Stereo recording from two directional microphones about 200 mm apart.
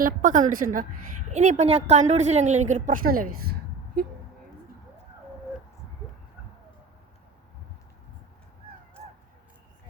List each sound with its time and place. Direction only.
0.0 s a woman's voice: 40° right (ahead or behind)